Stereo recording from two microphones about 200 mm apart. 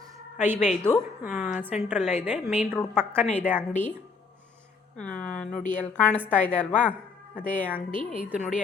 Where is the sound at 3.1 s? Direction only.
5° left (ahead or behind).